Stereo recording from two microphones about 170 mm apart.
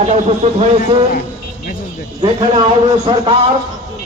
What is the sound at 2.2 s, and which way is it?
A man's voice, 30° right (ahead or behind).